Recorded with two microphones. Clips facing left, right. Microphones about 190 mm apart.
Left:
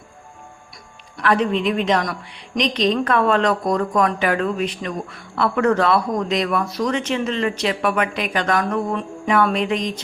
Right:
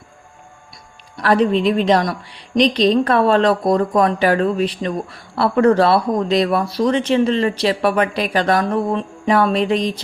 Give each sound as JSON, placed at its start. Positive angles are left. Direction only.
{"t": 1.1, "sound": "speech", "side_deg": -35}